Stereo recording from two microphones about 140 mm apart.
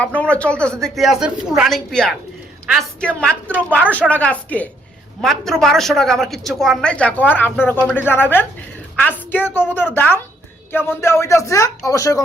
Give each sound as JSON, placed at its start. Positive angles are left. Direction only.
{"t": 0.0, "sound": "a woman's voice", "side_deg": 10}